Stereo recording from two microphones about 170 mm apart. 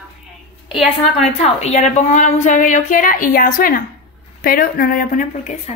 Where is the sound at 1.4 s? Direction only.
40° left (ahead or behind).